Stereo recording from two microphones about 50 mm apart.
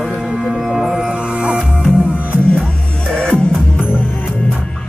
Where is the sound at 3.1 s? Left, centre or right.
Centre.